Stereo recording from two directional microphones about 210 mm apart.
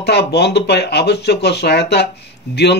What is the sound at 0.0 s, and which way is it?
A man's voice, 50° left (ahead or behind).